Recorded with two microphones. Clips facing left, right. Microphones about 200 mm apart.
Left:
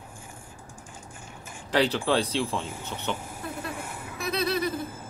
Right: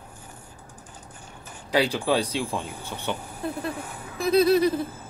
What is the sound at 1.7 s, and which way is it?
Speech, 10° right (ahead or behind).